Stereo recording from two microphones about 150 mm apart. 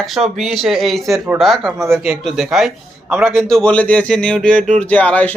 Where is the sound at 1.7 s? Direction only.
15° right (ahead or behind).